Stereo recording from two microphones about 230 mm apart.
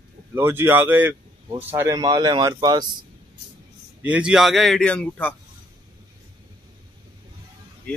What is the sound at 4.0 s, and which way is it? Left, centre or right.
Speech, centre.